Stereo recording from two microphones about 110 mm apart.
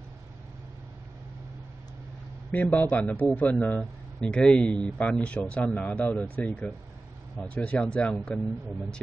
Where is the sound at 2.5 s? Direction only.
15° left (ahead or behind).